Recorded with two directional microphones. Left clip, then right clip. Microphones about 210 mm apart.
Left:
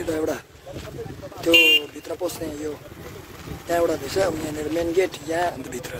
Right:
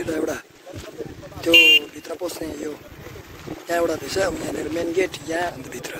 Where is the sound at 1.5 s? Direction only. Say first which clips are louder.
Right 3 dB; 40° left (ahead or behind).